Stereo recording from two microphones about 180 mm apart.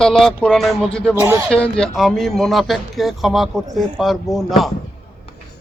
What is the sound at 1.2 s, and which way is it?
Speech, 15° right (ahead or behind).